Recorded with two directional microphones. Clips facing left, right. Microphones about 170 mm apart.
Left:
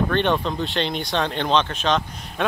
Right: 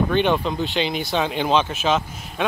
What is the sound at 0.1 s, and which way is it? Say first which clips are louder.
Speech: right 1 dB; 5° right (ahead or behind).